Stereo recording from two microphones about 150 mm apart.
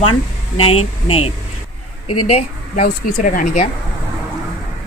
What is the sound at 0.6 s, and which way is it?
Speech, 40° left (ahead or behind).